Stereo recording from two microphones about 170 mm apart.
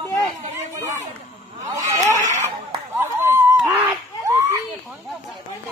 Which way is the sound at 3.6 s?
10° right (ahead or behind).